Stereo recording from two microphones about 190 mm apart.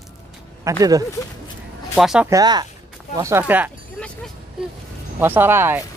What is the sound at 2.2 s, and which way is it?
Speech, 20° right (ahead or behind).